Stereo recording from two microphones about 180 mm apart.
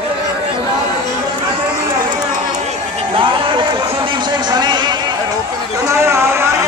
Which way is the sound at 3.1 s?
30° right (ahead or behind).